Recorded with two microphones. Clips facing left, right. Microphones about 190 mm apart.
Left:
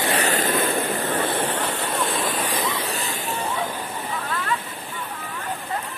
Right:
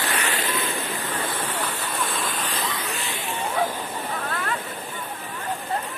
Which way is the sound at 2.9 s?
40° left (ahead or behind).